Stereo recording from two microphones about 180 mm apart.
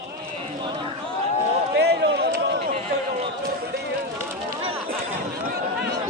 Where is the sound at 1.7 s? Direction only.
65° right (ahead or behind).